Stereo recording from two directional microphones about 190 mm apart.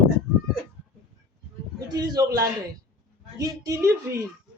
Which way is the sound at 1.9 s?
20° right (ahead or behind).